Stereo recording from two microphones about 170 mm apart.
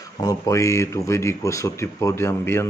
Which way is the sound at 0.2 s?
20° left (ahead or behind).